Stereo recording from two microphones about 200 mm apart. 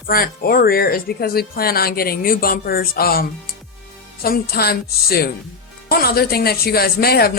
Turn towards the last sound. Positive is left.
turn(degrees=50)  # may be behind; listen again after turning